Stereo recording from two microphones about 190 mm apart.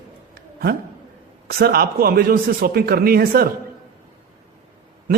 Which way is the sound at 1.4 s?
55° right (ahead or behind).